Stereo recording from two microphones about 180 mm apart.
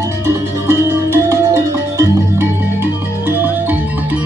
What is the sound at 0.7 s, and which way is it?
Music, 15° right (ahead or behind).